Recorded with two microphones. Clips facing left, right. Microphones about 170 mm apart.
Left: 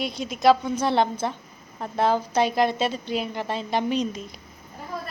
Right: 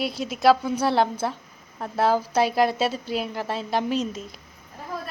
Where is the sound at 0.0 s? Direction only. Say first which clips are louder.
Even; 5° right (ahead or behind).